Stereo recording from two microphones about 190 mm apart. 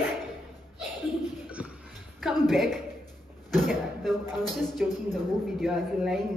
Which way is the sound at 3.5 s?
Centre (ahead or behind).